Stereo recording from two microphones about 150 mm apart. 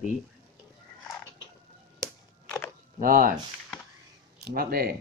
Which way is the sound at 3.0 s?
70° right (ahead or behind).